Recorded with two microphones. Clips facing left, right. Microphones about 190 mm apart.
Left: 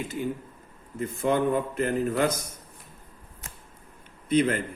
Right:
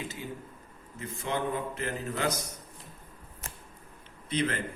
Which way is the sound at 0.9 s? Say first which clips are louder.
Left 8 dB; 55° left (ahead or behind).